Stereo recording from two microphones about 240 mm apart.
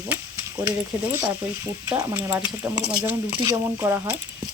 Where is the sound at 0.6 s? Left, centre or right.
Centre.